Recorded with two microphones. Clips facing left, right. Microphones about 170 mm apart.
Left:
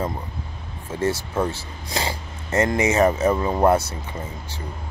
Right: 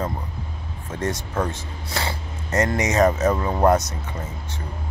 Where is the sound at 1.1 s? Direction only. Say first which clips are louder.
Left 2 dB; 10° left (ahead or behind).